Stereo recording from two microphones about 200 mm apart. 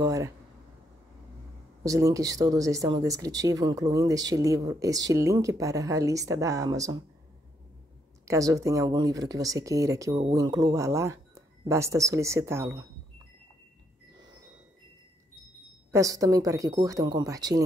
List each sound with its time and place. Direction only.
0.0 s speech: 15° right (ahead or behind)
1.9 s speech: 15° right (ahead or behind)
8.3 s speech: 15° right (ahead or behind)
15.9 s speech: 15° right (ahead or behind)